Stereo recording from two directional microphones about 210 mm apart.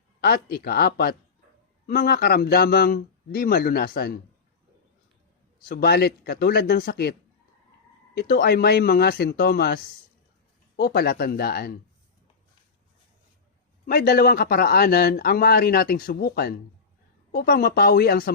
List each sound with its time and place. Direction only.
0.2 s a man's voice: 45° left (ahead or behind)
5.6 s a man's voice: 45° left (ahead or behind)
13.8 s a man's voice: 45° left (ahead or behind)